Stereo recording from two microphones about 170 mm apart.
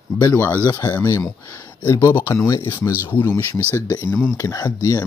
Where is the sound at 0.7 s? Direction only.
20° left (ahead or behind).